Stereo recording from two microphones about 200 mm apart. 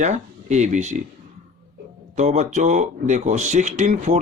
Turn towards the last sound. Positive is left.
turn(degrees=-35)  # may be behind; listen again after turning